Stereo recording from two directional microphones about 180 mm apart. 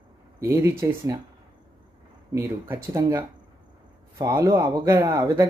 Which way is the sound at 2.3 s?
15° right (ahead or behind).